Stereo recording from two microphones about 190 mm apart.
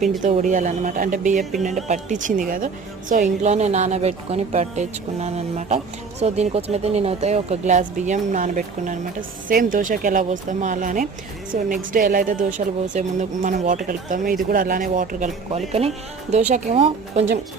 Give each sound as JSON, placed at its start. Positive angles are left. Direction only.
{"t": 0.2, "sound": "a woman's voice", "side_deg": -40}
{"t": 16.5, "sound": "a woman's voice", "side_deg": -30}